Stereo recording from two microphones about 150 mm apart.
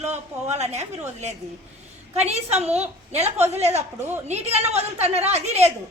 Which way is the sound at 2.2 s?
45° right (ahead or behind).